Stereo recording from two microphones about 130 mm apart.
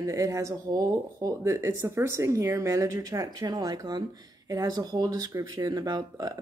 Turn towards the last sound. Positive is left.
turn(degrees=-30)  # may be behind; listen again after turning